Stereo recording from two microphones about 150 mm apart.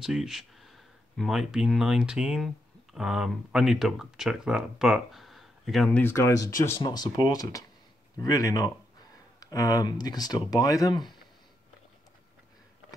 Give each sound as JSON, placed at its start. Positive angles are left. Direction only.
{"t": 0.0, "sound": "speech", "side_deg": -5}
{"t": 5.9, "sound": "speech", "side_deg": 15}